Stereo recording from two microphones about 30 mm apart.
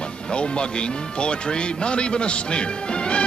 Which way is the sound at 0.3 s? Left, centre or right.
Left.